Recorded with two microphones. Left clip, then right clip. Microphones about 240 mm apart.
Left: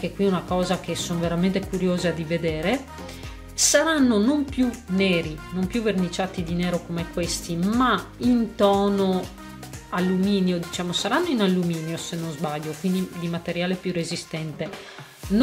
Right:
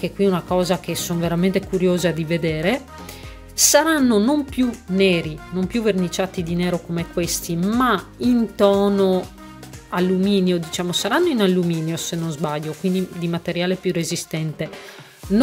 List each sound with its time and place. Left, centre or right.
0.0 s speech: right